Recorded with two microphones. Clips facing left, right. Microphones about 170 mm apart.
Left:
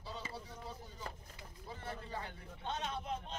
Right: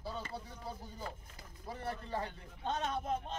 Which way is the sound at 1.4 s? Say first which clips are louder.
Right 5 dB; 40° right (ahead or behind).